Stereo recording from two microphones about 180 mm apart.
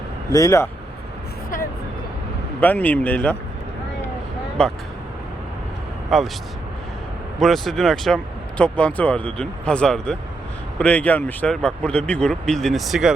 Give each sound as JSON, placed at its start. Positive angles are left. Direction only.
{"t": 0.3, "sound": "speech", "side_deg": 20}
{"t": 2.6, "sound": "speech", "side_deg": 10}
{"t": 4.6, "sound": "speech", "side_deg": 5}
{"t": 6.1, "sound": "speech", "side_deg": 0}
{"t": 7.3, "sound": "speech", "side_deg": 0}